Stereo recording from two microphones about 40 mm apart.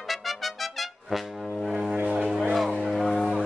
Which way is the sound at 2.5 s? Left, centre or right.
Centre.